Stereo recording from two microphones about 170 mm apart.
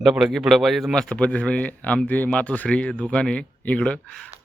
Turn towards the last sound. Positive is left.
turn(degrees=5)  # may be behind; listen again after turning